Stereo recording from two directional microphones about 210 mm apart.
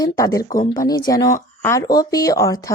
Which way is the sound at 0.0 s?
15° left (ahead or behind).